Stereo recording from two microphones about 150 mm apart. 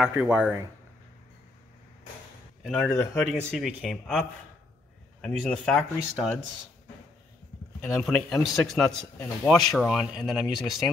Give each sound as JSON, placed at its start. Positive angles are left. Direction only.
{"t": 0.0, "sound": "speech", "side_deg": -5}
{"t": 2.6, "sound": "speech", "side_deg": 5}
{"t": 2.9, "sound": "speech", "side_deg": 20}
{"t": 3.2, "sound": "speech", "side_deg": 0}
{"t": 7.8, "sound": "speech", "side_deg": 5}